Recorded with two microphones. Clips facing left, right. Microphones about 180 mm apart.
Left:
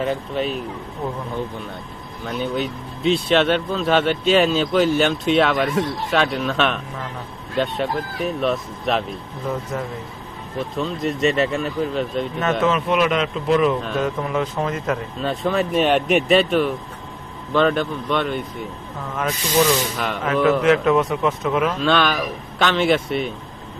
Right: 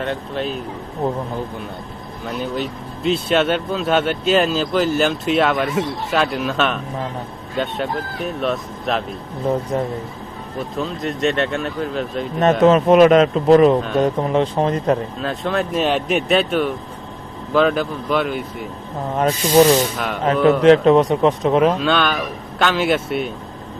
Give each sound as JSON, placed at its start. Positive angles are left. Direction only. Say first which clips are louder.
{"t": 0.0, "sound": "speech", "louder": "left 1 dB", "side_deg": 0}
{"t": 1.0, "sound": "a man's voice", "louder": "right 6 dB", "side_deg": -30}
{"t": 2.2, "sound": "speech", "louder": "even", "side_deg": -5}
{"t": 9.5, "sound": "a man's voice", "louder": "right 6 dB", "side_deg": -35}
{"t": 10.6, "sound": "speech", "louder": "left 1 dB", "side_deg": 0}
{"t": 12.6, "sound": "a man's voice", "louder": "right 10 dB", "side_deg": -40}
{"t": 15.2, "sound": "speech", "louder": "even", "side_deg": 0}
{"t": 19.1, "sound": "a man's voice", "louder": "right 6 dB", "side_deg": -35}
{"t": 21.8, "sound": "speech", "louder": "even", "side_deg": 0}